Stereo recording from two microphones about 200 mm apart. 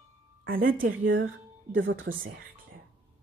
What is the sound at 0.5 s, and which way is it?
Speech, 45° right (ahead or behind).